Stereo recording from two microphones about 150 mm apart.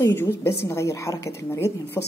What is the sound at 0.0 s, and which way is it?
Speech, 15° left (ahead or behind).